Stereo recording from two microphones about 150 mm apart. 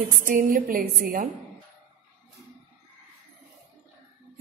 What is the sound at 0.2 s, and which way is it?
A woman's voice, 65° right (ahead or behind).